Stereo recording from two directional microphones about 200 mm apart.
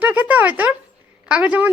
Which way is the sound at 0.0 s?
10° right (ahead or behind).